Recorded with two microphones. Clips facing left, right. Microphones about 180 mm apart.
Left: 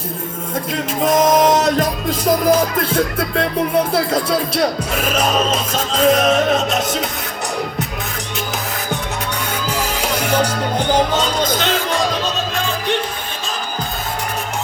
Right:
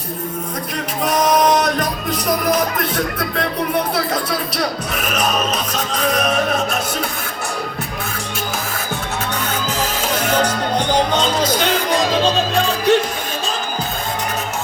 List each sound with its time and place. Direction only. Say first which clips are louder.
1.0 s music: left 2 dB; 25° left (ahead or behind)
3.9 s speech: left 4 dB; 25° left (ahead or behind)
9.7 s music: left 2 dB; 10° left (ahead or behind); by 12.0 s 15° right (ahead or behind)